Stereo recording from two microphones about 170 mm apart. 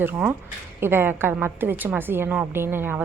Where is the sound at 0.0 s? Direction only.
10° right (ahead or behind).